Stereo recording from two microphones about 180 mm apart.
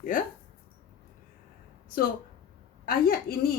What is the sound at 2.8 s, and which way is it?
Speech, 55° left (ahead or behind).